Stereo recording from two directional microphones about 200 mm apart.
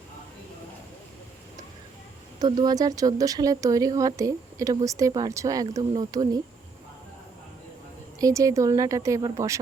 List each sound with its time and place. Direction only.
2.4 s speech: 20° right (ahead or behind)
8.2 s speech: 15° right (ahead or behind)